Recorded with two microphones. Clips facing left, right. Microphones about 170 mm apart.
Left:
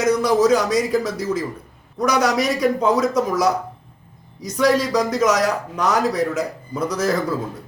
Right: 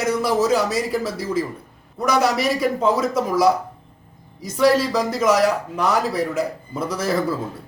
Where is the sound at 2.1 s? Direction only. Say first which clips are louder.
Even; 5° right (ahead or behind).